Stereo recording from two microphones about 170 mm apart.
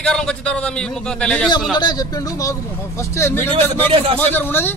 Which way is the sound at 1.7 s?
25° left (ahead or behind).